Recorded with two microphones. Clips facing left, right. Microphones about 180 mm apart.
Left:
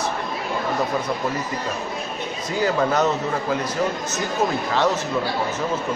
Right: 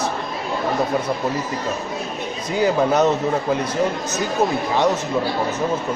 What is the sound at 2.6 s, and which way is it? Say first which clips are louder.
Speech: right 3 dB; 20° right (ahead or behind).